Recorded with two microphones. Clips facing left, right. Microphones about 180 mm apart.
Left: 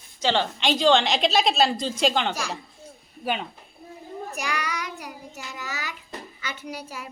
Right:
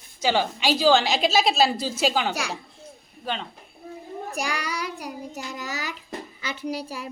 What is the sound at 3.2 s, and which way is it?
Speech, 10° left (ahead or behind).